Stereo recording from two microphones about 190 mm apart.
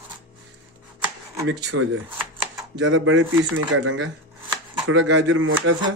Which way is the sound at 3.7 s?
75° right (ahead or behind).